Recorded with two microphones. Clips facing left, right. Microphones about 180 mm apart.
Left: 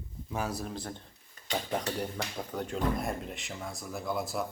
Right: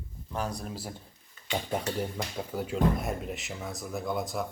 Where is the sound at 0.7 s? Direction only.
10° right (ahead or behind).